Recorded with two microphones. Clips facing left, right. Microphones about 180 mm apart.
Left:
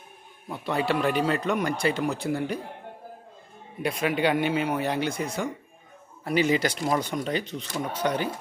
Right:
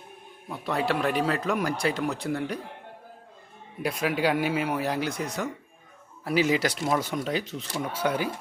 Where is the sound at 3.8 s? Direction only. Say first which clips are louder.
Left 1 dB; centre (ahead or behind).